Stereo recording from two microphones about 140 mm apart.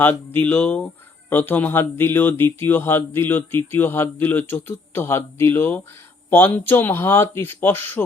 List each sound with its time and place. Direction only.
0.0 s speech: 15° left (ahead or behind)